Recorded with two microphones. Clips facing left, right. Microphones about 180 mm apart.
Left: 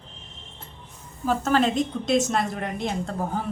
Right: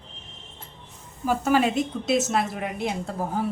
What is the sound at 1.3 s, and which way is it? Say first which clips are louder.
A woman's voice: even; 10° right (ahead or behind).